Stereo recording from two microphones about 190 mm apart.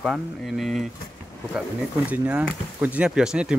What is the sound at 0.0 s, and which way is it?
Speech, centre (ahead or behind).